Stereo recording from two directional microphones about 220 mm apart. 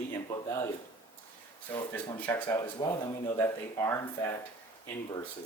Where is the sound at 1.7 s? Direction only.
15° left (ahead or behind).